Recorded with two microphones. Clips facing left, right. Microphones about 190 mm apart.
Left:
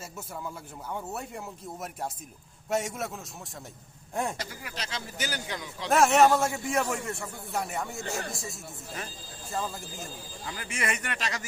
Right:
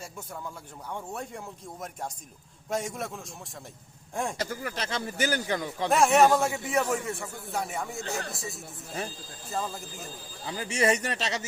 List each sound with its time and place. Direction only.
0.9 s a man's voice: 5° left (ahead or behind)
4.4 s speech: 50° right (ahead or behind)
5.9 s a man's voice: centre (ahead or behind)
10.4 s speech: 30° right (ahead or behind)